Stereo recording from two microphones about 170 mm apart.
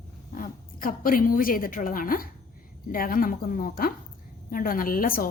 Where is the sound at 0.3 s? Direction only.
55° left (ahead or behind).